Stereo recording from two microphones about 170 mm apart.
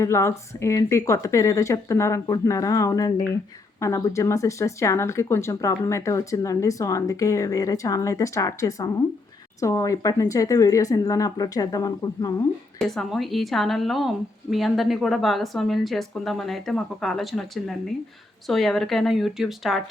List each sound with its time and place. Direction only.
0.0 s speech: 15° left (ahead or behind)
12.8 s a woman's voice: centre (ahead or behind)